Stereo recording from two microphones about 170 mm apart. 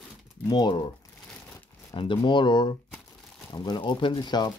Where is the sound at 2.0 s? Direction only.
30° left (ahead or behind).